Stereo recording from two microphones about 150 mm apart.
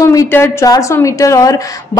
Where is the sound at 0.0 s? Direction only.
20° left (ahead or behind).